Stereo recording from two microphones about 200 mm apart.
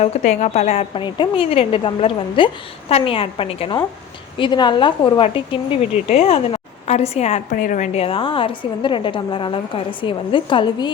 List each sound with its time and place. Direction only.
0.0 s a woman's voice: 35° left (ahead or behind)